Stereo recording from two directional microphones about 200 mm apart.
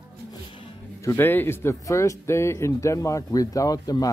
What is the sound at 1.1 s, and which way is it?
Speech, 10° left (ahead or behind).